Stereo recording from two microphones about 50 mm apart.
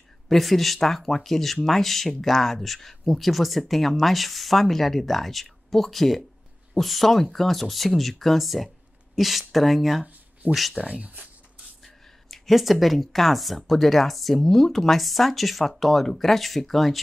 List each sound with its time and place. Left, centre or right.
0.3 s speech: centre
10.9 s speech: right
12.3 s speech: centre